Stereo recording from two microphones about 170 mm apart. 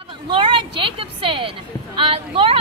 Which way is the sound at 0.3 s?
30° right (ahead or behind).